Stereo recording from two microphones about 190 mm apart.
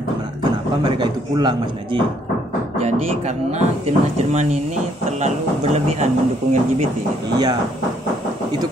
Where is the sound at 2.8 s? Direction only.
35° right (ahead or behind).